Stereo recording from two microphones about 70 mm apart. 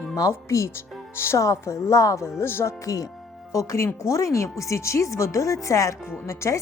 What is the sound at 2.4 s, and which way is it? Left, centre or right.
Speech, left.